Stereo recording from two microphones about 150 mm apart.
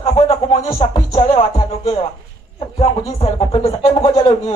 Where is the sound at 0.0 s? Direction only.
45° left (ahead or behind).